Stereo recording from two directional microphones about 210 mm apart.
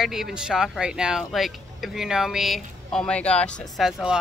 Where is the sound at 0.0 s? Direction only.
Centre (ahead or behind).